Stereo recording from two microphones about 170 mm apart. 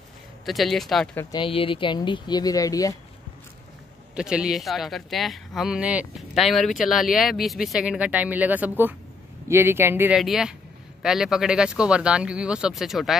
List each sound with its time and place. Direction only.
0.5 s speech: centre (ahead or behind)
1.3 s speech: 30° left (ahead or behind)
4.1 s speech: 5° right (ahead or behind)
10.1 s speech: centre (ahead or behind)